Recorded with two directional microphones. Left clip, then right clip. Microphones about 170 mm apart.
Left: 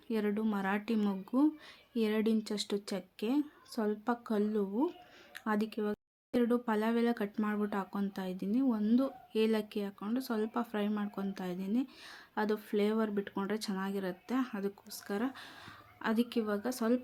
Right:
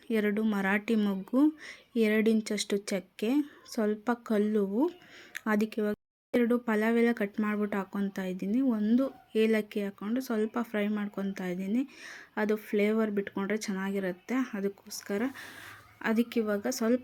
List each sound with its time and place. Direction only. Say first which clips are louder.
0.1 s a woman's voice: right 5 dB; 20° right (ahead or behind)